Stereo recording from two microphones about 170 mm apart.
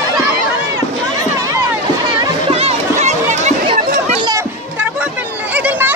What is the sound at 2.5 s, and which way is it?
Chatter, 35° right (ahead or behind).